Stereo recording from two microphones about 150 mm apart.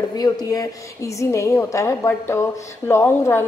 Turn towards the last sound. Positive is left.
turn(degrees=15)  # may be behind; listen again after turning